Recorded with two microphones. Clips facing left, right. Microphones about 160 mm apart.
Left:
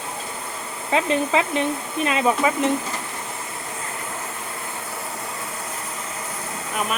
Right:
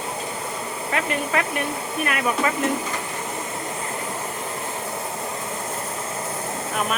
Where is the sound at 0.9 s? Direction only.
20° left (ahead or behind).